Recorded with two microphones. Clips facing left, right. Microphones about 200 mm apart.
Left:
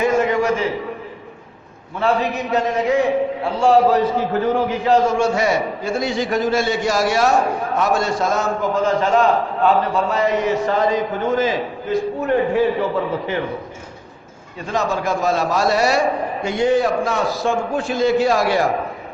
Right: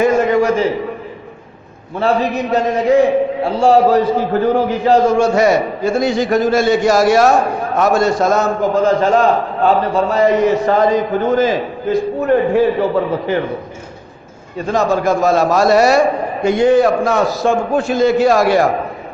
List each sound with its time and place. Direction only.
0.0 s a sound: 40° right (ahead or behind)
2.0 s a man's voice: 35° right (ahead or behind)
14.7 s a man's voice: 40° right (ahead or behind)